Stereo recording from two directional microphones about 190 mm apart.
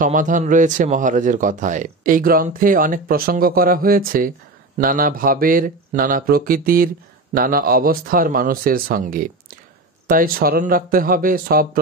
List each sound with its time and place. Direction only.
0.0 s speech: 45° right (ahead or behind)